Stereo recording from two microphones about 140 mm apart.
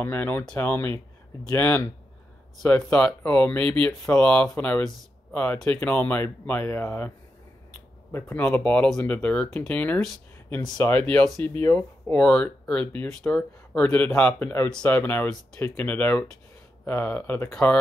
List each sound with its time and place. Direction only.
0.0 s speech: 15° left (ahead or behind)
8.1 s speech: 15° left (ahead or behind)